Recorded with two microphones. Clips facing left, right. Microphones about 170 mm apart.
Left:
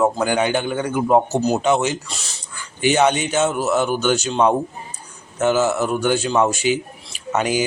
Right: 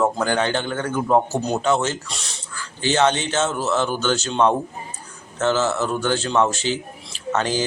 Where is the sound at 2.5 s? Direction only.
15° left (ahead or behind).